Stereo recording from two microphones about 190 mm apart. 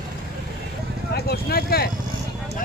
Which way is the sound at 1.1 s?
55° left (ahead or behind).